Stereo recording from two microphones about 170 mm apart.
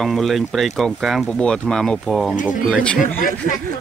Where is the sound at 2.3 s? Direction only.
50° left (ahead or behind).